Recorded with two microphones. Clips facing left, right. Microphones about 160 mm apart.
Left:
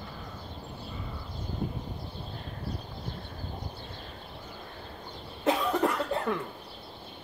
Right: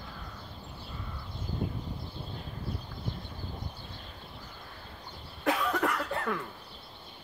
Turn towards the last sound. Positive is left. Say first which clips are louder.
# left 3 dB
turn(degrees=20)  # may be behind; listen again after turning